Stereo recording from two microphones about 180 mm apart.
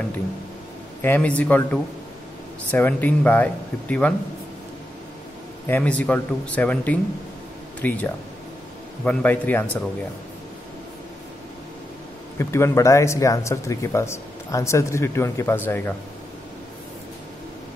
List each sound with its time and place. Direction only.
1.0 s speech: 10° left (ahead or behind)
5.7 s speech: 10° left (ahead or behind)
12.4 s speech: 15° left (ahead or behind)